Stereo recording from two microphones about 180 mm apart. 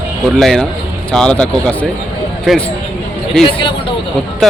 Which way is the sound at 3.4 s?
30° left (ahead or behind).